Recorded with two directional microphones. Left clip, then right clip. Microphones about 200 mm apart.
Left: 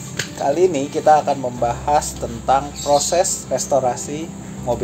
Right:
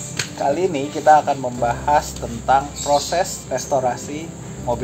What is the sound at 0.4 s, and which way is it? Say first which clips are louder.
Speech: left 3 dB; 45° left (ahead or behind).